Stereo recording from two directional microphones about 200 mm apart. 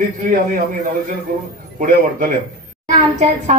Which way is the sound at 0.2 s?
40° right (ahead or behind).